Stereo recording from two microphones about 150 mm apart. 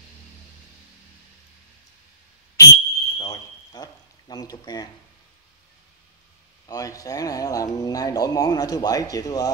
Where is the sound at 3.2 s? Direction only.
25° left (ahead or behind).